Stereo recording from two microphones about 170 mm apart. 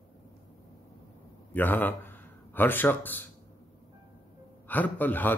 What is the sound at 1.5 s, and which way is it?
A man's voice, 10° left (ahead or behind).